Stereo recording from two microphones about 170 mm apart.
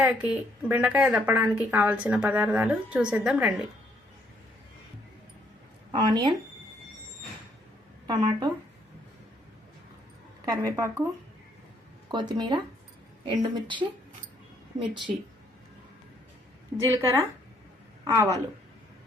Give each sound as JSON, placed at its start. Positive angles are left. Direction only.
{"t": 0.0, "sound": "speech", "side_deg": -5}
{"t": 5.9, "sound": "a woman's voice", "side_deg": -25}
{"t": 8.0, "sound": "speech", "side_deg": -25}
{"t": 10.4, "sound": "a woman's voice", "side_deg": -25}
{"t": 12.1, "sound": "a woman's voice", "side_deg": -25}
{"t": 16.7, "sound": "speech", "side_deg": -15}